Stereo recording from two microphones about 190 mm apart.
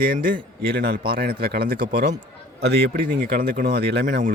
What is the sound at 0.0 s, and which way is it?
Speech, 50° right (ahead or behind).